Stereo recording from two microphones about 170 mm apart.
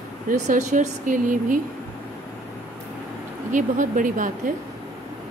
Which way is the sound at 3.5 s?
50° right (ahead or behind).